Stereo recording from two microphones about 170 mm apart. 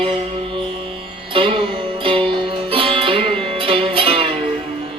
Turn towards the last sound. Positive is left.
turn(degrees=-35)  # may be behind; listen again after turning